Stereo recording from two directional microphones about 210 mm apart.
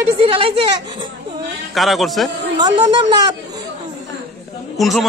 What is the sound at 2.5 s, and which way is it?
Speech, 20° right (ahead or behind).